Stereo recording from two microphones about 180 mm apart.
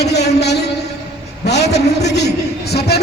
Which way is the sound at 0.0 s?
65° left (ahead or behind).